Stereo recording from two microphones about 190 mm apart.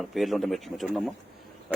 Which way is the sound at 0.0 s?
Centre (ahead or behind).